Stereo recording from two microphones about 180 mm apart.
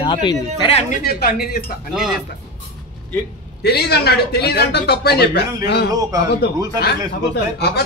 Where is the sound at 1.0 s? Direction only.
60° left (ahead or behind).